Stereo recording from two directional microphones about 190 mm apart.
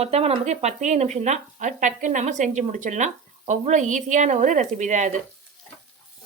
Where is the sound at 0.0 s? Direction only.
35° right (ahead or behind).